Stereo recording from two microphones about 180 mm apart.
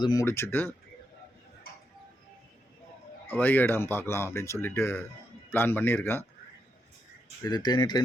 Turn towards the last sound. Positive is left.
turn(degrees=25)  # may be behind; listen again after turning